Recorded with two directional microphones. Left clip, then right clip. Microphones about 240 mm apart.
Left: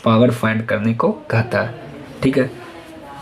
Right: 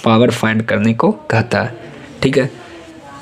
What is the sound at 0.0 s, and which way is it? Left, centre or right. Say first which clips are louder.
Speech: right 3 dB; right.